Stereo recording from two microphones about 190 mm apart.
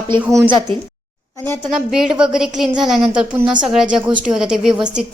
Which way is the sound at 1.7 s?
5° right (ahead or behind).